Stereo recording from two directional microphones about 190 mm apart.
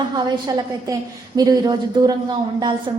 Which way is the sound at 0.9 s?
20° right (ahead or behind).